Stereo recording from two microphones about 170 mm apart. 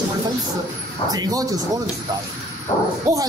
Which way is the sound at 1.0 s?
20° right (ahead or behind).